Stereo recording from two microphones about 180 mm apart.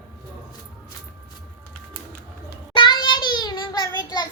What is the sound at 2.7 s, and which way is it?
Child singing, 25° left (ahead or behind).